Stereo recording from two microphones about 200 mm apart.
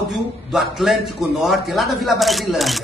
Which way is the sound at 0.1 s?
Centre (ahead or behind).